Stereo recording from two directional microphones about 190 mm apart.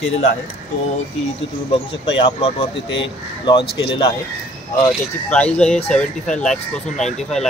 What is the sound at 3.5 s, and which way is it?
Speech, 25° left (ahead or behind).